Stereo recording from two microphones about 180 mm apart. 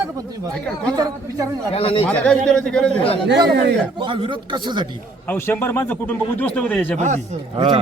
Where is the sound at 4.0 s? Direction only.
30° right (ahead or behind).